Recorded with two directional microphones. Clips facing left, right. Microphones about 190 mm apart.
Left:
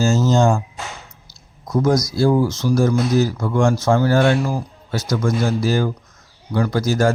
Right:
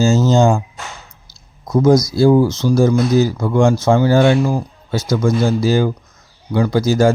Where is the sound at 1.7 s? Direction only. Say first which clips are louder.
Right 5 dB; 25° right (ahead or behind).